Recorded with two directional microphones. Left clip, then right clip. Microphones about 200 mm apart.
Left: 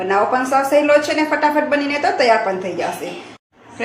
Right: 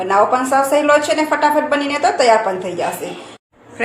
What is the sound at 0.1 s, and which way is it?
A woman's voice, 10° right (ahead or behind).